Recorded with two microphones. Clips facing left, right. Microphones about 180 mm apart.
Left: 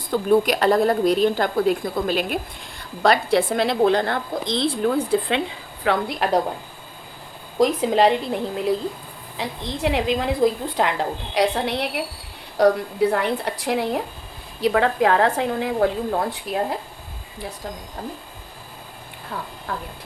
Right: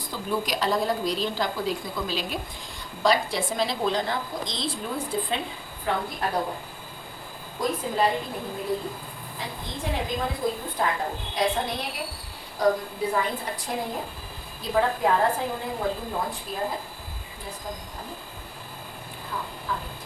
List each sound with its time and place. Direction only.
0.1 s a woman's voice: 60° left (ahead or behind)
5.8 s a woman's voice: 85° left
7.6 s a woman's voice: 85° left
11.3 s a woman's voice: 70° left (ahead or behind)
19.7 s a woman's voice: 65° left (ahead or behind)